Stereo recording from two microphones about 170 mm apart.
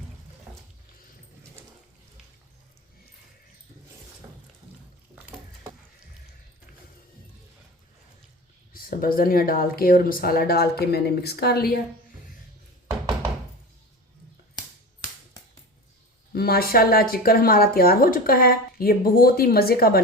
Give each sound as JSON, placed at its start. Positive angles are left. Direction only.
{"t": 8.7, "sound": "speech", "side_deg": 55}
{"t": 16.3, "sound": "speech", "side_deg": 65}